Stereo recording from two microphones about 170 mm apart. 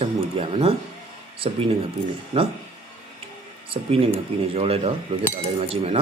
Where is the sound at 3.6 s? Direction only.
35° right (ahead or behind).